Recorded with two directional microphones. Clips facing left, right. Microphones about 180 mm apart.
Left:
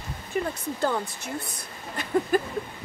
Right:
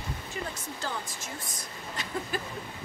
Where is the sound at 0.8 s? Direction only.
60° left (ahead or behind).